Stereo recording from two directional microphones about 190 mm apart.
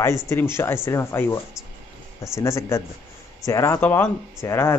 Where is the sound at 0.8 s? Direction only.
15° left (ahead or behind).